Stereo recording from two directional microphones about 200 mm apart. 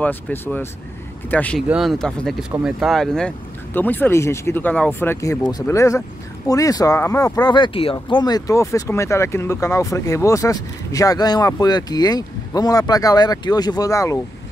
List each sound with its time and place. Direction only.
0.0 s speech: 10° left (ahead or behind)